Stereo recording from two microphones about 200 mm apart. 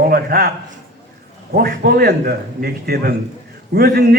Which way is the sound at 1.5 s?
50° right (ahead or behind).